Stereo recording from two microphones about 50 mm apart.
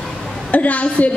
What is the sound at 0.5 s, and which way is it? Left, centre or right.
Speech, left.